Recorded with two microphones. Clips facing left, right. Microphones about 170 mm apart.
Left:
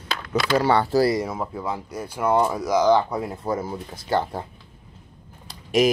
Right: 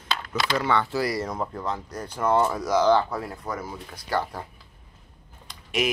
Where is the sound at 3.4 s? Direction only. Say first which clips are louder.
Left 6 dB; 25° left (ahead or behind).